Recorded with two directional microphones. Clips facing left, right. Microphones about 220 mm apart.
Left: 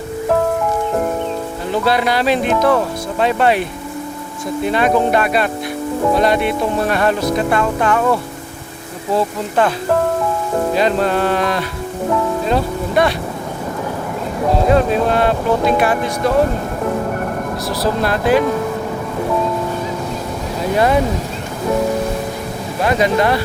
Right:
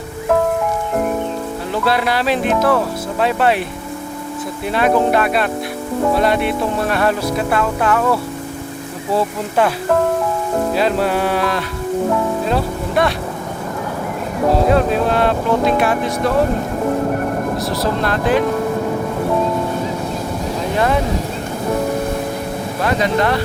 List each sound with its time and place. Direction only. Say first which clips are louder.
1.8 s music: left 1 dB; centre (ahead or behind)
4.6 s music: even; centre (ahead or behind)
9.1 s cattle: left 1 dB; 10° right (ahead or behind)
10.8 s cattle: left 2 dB; 5° right (ahead or behind)
12.5 s speech: left 1 dB; centre (ahead or behind)
14.7 s music: left 1 dB; centre (ahead or behind)
17.7 s speech: left 5 dB; 5° left (ahead or behind)
22.8 s speech: left 2 dB; 10° left (ahead or behind)